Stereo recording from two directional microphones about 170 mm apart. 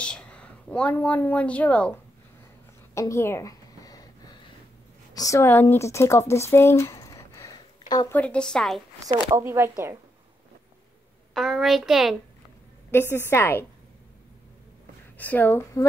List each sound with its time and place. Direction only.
0.0 s a woman's voice: 5° left (ahead or behind)
2.9 s a sound: 15° left (ahead or behind)
5.1 s speech: 20° left (ahead or behind)
8.1 s a woman's voice: 5° left (ahead or behind)
9.3 s speech: 15° right (ahead or behind)
11.3 s a woman's voice: centre (ahead or behind)
12.9 s a woman's voice: 15° left (ahead or behind)
15.1 s a woman's voice: 10° left (ahead or behind)